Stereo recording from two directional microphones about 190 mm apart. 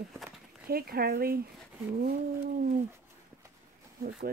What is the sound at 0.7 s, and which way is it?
Speech, 55° right (ahead or behind).